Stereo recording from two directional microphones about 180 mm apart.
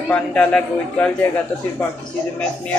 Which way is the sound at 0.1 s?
5° left (ahead or behind).